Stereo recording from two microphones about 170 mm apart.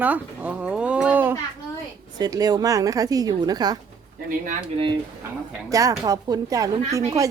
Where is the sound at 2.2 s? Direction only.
20° right (ahead or behind).